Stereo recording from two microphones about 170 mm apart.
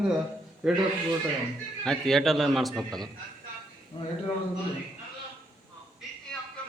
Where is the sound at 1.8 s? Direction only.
Centre (ahead or behind).